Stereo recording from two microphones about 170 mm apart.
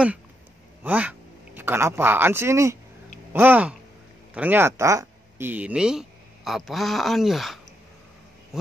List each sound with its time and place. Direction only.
0.8 s speech: 10° right (ahead or behind)